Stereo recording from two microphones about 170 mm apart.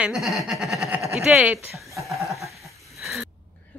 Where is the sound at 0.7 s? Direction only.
15° right (ahead or behind).